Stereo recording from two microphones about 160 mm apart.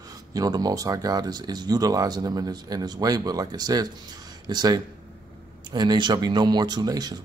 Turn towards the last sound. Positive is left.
turn(degrees=-25)  # may be behind; listen again after turning